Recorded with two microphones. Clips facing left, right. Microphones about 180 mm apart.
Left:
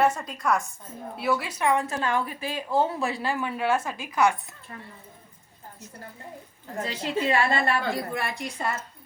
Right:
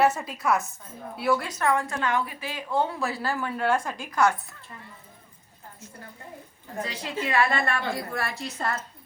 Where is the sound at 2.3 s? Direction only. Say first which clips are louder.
Left 4 dB; 40° left (ahead or behind).